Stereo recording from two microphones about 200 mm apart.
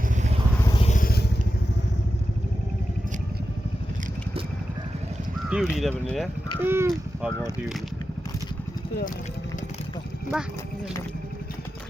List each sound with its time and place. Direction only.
0.6 s vehicle: 20° left (ahead or behind)
0.9 s vehicle: 45° left (ahead or behind)
5.5 s speech: 5° right (ahead or behind)
6.6 s speech: 10° right (ahead or behind)
10.3 s speech: centre (ahead or behind)